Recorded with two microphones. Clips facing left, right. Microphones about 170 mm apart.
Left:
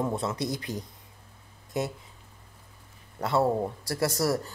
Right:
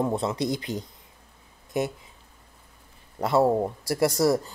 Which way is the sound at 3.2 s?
15° right (ahead or behind).